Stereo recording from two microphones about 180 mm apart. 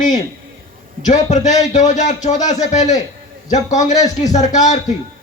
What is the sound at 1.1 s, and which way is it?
Speech, 40° left (ahead or behind).